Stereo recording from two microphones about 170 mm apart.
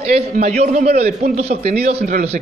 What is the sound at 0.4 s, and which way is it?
A man's voice, 45° right (ahead or behind).